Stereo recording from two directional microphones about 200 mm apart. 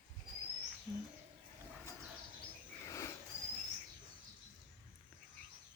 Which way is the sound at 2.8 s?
15° left (ahead or behind).